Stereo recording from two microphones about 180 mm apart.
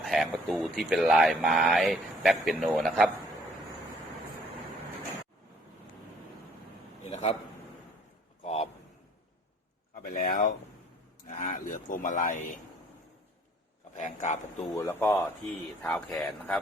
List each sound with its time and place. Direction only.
0.0 s a sound: centre (ahead or behind)
0.4 s speech: centre (ahead or behind)
7.0 s a sound: 35° left (ahead or behind)
10.0 s speech: 50° left (ahead or behind)
13.9 s speech: 40° left (ahead or behind)
14.8 s speech: 10° left (ahead or behind)